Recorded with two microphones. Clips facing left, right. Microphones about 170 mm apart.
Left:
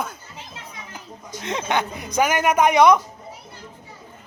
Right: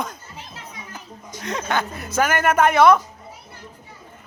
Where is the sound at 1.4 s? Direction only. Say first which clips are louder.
Left 1 dB; 20° left (ahead or behind).